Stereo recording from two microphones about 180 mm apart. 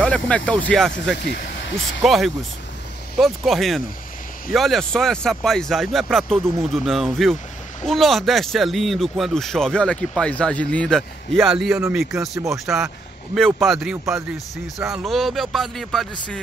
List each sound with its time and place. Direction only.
0.0 s a sound: 5° left (ahead or behind)
0.5 s speech: 5° left (ahead or behind)
1.1 s speech: 70° left (ahead or behind)
2.0 s speech: centre (ahead or behind)